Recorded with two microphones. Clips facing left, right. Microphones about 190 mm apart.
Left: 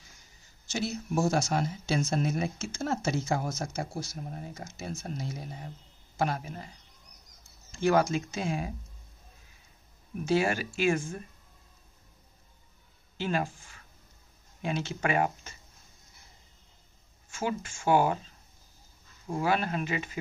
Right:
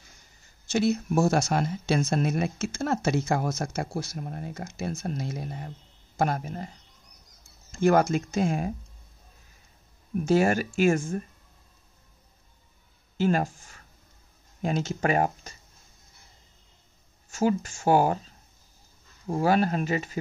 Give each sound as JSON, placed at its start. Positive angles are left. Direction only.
{"t": 0.7, "sound": "speech", "side_deg": -60}
{"t": 6.1, "sound": "speech", "side_deg": -50}
{"t": 7.7, "sound": "speech", "side_deg": -50}
{"t": 10.2, "sound": "speech", "side_deg": -45}
{"t": 13.2, "sound": "speech", "side_deg": -45}
{"t": 17.3, "sound": "speech", "side_deg": -40}
{"t": 19.4, "sound": "speech", "side_deg": -40}